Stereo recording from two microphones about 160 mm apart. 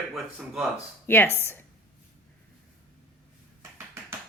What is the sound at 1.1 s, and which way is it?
Speech, 15° left (ahead or behind).